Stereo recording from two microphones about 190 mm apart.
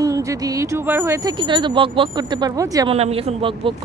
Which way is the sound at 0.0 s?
15° right (ahead or behind).